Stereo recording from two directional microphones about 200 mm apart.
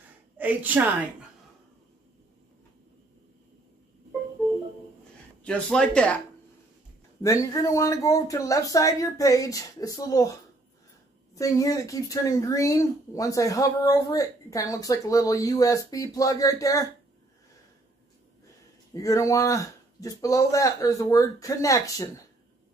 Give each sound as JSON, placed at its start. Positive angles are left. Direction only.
{"t": 0.4, "sound": "a woman's voice", "side_deg": -10}
{"t": 5.4, "sound": "speech", "side_deg": 5}
{"t": 7.2, "sound": "speech", "side_deg": 20}
{"t": 11.3, "sound": "speech", "side_deg": 15}
{"t": 18.9, "sound": "speech", "side_deg": 15}